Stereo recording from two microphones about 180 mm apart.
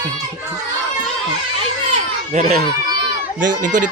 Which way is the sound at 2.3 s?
40° right (ahead or behind).